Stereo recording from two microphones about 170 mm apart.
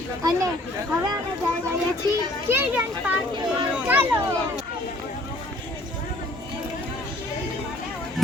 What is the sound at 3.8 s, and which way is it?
Speech, 10° right (ahead or behind).